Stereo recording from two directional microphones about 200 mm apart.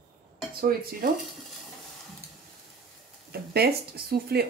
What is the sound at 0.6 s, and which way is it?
Speech, 50° right (ahead or behind).